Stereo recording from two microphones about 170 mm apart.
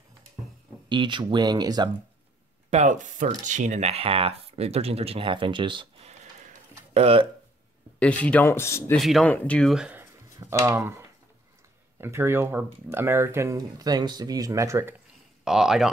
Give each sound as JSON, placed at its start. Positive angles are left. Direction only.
{"t": 0.8, "sound": "speech", "side_deg": -25}
{"t": 2.7, "sound": "speech", "side_deg": -45}
{"t": 6.4, "sound": "a sound", "side_deg": -40}
{"t": 8.0, "sound": "speech", "side_deg": 10}
{"t": 8.9, "sound": "speech", "side_deg": 0}
{"t": 10.3, "sound": "speech", "side_deg": -20}
{"t": 15.4, "sound": "speech", "side_deg": -5}